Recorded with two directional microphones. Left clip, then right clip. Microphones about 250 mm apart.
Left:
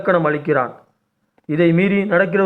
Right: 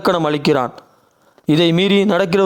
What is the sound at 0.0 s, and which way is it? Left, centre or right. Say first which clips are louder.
Speech: right 1 dB; right.